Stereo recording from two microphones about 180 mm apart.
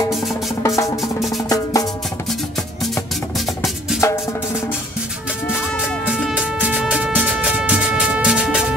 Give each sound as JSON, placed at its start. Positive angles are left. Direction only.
{"t": 0.6, "sound": "music", "side_deg": 15}
{"t": 3.3, "sound": "music", "side_deg": 0}
{"t": 6.1, "sound": "music", "side_deg": -5}